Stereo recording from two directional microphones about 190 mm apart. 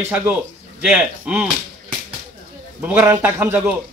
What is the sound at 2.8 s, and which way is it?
Speech, 10° right (ahead or behind).